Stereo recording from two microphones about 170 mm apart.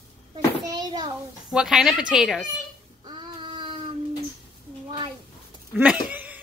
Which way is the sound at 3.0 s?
25° right (ahead or behind).